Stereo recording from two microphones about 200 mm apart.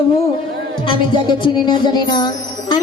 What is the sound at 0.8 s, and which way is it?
Music, 25° left (ahead or behind).